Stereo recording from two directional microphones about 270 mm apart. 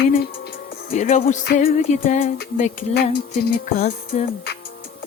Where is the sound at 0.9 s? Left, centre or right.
Left.